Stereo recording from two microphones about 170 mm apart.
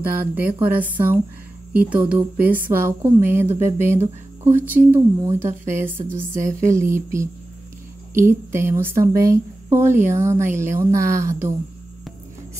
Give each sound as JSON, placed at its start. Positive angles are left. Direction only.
{"t": 0.0, "sound": "a woman's voice", "side_deg": -10}